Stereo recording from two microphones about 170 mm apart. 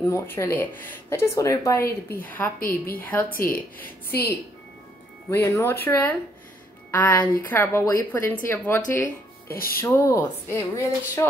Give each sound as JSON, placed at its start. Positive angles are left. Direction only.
{"t": 0.0, "sound": "speech", "side_deg": 15}
{"t": 5.3, "sound": "speech", "side_deg": 15}
{"t": 9.5, "sound": "music", "side_deg": 60}
{"t": 9.8, "sound": "speech", "side_deg": 15}